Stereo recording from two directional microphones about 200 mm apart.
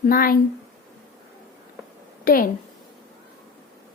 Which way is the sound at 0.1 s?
45° left (ahead or behind).